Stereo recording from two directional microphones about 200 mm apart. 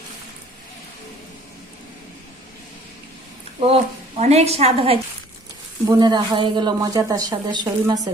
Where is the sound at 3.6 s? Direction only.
30° right (ahead or behind).